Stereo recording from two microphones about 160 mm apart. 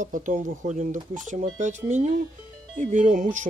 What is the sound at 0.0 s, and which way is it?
Speech, 50° right (ahead or behind).